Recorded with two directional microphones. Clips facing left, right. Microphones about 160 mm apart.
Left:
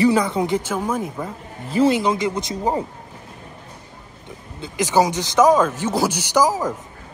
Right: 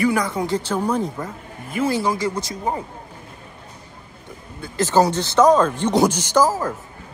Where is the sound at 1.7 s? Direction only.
30° left (ahead or behind).